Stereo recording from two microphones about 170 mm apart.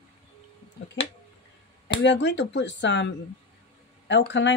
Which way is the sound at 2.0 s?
90° left.